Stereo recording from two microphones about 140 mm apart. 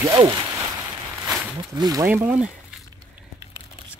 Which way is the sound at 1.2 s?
10° right (ahead or behind).